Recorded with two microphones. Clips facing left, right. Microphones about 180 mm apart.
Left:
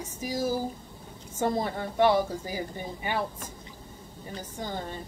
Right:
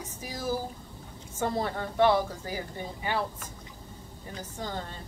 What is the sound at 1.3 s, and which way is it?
A woman's voice, 15° left (ahead or behind).